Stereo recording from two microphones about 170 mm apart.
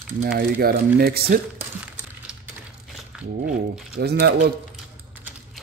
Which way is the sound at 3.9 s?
70° right (ahead or behind).